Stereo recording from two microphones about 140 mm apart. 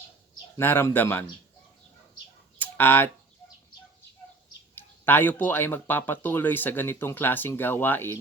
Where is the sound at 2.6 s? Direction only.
15° left (ahead or behind).